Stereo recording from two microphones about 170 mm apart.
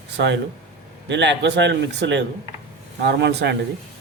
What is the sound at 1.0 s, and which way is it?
A man's voice, 90° right.